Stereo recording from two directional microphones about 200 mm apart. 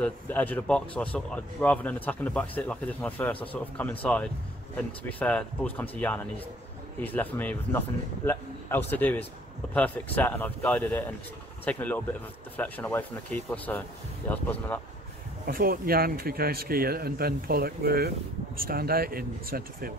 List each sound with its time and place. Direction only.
0.0 s a man's voice: 10° left (ahead or behind)
15.4 s a man's voice: 45° right (ahead or behind)